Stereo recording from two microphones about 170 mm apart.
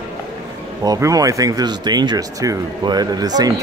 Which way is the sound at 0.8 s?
20° right (ahead or behind).